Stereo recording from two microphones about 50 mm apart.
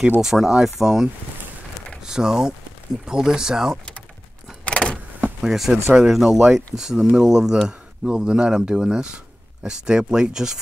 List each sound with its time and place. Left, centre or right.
0.2 s speech: centre
2.0 s speech: centre
4.6 s power windows: left
5.4 s speech: centre